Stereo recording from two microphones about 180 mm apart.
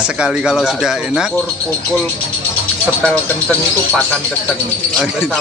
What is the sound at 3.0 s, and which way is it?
Speech, 10° left (ahead or behind).